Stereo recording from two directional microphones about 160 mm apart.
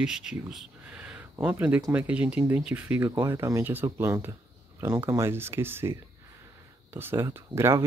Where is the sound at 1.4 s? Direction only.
10° right (ahead or behind).